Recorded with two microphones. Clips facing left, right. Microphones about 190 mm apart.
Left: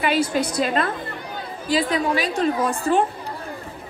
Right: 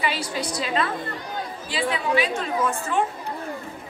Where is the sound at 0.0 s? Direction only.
50° left (ahead or behind); by 3.1 s 35° left (ahead or behind).